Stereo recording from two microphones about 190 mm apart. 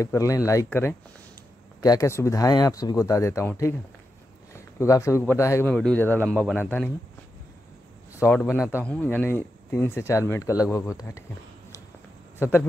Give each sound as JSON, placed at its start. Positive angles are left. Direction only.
{"t": 0.0, "sound": "a man's voice", "side_deg": 15}
{"t": 6.2, "sound": "speech", "side_deg": -5}
{"t": 8.2, "sound": "a man's voice", "side_deg": 10}
{"t": 12.4, "sound": "a man's voice", "side_deg": 10}